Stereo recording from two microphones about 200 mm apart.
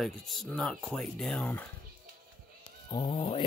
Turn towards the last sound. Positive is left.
turn(degrees=25)  # may be behind; listen again after turning